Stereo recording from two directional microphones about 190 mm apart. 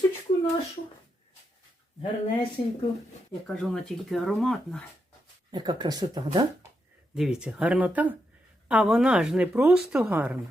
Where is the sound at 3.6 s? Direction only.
Centre (ahead or behind).